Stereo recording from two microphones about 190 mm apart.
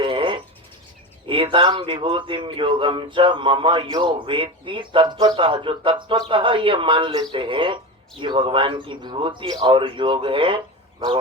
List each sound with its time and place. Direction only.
0.0 s bird: 25° right (ahead or behind)
1.3 s a man's voice: 25° right (ahead or behind)